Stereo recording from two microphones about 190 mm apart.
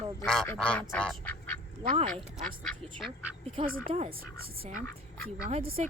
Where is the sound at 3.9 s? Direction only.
30° right (ahead or behind).